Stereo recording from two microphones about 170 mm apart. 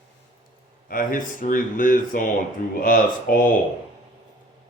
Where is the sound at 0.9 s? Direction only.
55° left (ahead or behind).